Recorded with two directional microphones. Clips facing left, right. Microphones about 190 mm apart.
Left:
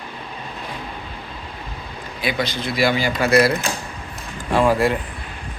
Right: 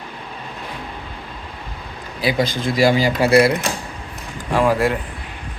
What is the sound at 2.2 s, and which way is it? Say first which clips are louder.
Speech: right 4 dB; 40° right (ahead or behind).